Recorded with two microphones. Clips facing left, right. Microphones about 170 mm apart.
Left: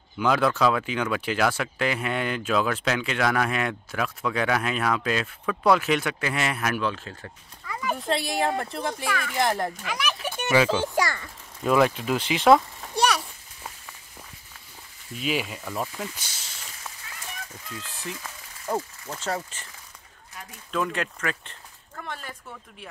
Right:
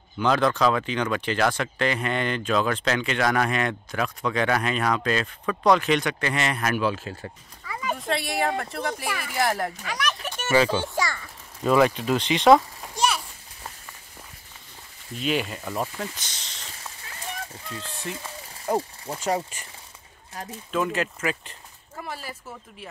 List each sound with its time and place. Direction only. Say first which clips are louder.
0.2 s speech: right 1 dB; 5° left (ahead or behind)
9.8 s a sound: even; 5° left (ahead or behind)
10.5 s speech: even; 5° left (ahead or behind)
15.1 s speech: right 2 dB; 5° left (ahead or behind)
15.6 s speech: right 2 dB; 5° right (ahead or behind)
16.0 s speech: right 1 dB; 5° left (ahead or behind)
19.1 s speech: right 4 dB; 15° right (ahead or behind)
20.4 s speech: right 7 dB; 40° right (ahead or behind)
20.7 s speech: right 2 dB; 5° right (ahead or behind)